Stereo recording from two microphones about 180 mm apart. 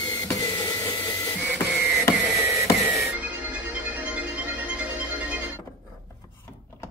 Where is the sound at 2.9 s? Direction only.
5° right (ahead or behind).